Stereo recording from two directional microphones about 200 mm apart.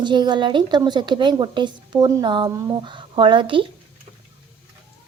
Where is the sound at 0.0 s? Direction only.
25° right (ahead or behind).